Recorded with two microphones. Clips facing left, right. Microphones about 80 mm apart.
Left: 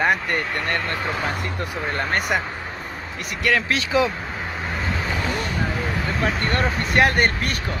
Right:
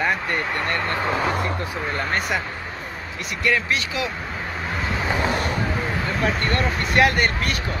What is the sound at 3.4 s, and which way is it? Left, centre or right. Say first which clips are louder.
Speech: left 1 dB; left.